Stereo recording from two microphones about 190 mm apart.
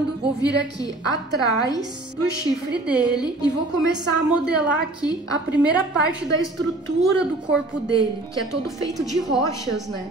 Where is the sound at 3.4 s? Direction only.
65° right (ahead or behind).